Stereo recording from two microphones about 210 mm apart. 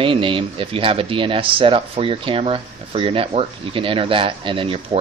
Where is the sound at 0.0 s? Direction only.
25° right (ahead or behind).